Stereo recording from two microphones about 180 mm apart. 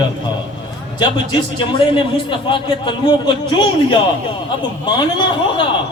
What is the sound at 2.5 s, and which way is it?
A man's voice, 25° left (ahead or behind).